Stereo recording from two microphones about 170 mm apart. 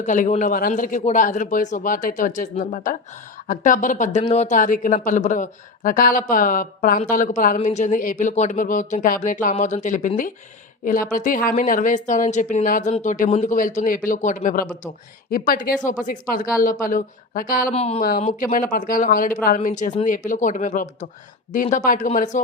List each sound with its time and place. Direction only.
0.0 s speech: 45° left (ahead or behind)
17.7 s speech: 40° left (ahead or behind)
18.3 s speech: 55° left (ahead or behind)